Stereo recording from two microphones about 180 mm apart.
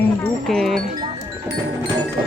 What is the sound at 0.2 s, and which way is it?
Music, centre (ahead or behind).